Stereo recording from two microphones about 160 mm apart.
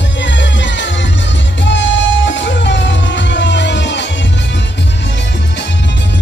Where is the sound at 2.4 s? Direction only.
90° left.